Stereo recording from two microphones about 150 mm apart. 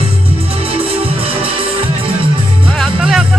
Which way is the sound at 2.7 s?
5° left (ahead or behind).